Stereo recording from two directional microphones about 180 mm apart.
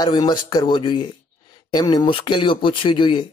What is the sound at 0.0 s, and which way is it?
Speech, 25° left (ahead or behind).